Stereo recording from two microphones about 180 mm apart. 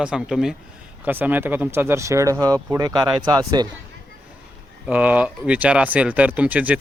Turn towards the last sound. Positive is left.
turn(degrees=-10)  # may be behind; listen again after turning